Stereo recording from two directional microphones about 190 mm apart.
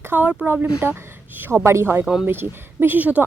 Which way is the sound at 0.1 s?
5° right (ahead or behind).